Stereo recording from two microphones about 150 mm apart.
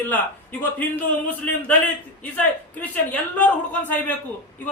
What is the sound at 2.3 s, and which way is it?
A man's voice, 10° left (ahead or behind).